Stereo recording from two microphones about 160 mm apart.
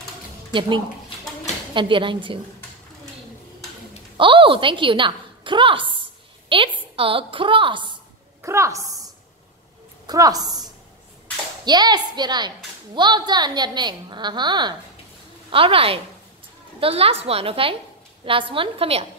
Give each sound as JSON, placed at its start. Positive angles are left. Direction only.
{"t": 0.5, "sound": "a woman's voice", "side_deg": -30}
{"t": 4.2, "sound": "a woman's voice", "side_deg": -30}
{"t": 8.4, "sound": "a woman's voice", "side_deg": -15}
{"t": 10.0, "sound": "a woman's voice", "side_deg": -25}